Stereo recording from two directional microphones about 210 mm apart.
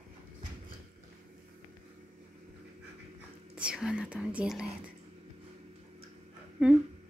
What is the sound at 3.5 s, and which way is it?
Speech, 5° right (ahead or behind).